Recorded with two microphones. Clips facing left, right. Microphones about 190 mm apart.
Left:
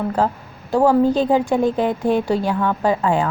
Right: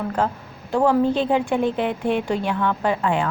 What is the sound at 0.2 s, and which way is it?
A woman's voice, 40° left (ahead or behind).